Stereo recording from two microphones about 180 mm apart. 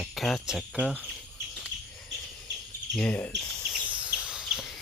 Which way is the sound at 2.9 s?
5° left (ahead or behind).